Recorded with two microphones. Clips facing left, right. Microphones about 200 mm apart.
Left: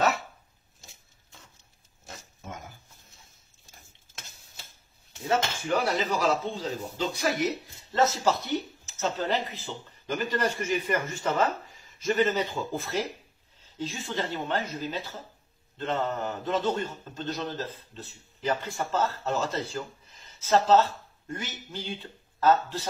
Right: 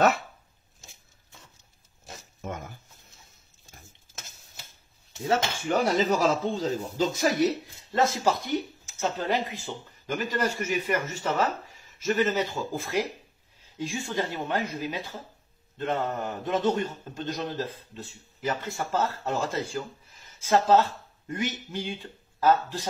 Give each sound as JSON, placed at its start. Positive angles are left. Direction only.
{"t": 5.7, "sound": "speech", "side_deg": -45}
{"t": 7.9, "sound": "a man's voice", "side_deg": -10}